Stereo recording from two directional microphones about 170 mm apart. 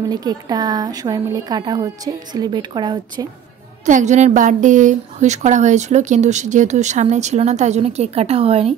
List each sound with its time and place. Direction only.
0.1 s a woman's voice: 20° right (ahead or behind)
3.8 s a woman's voice: 45° right (ahead or behind)